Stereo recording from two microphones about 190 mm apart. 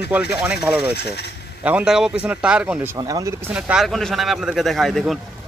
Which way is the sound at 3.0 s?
20° right (ahead or behind).